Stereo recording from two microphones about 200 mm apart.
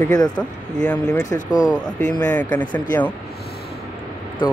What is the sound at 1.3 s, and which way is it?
Speech, 20° left (ahead or behind).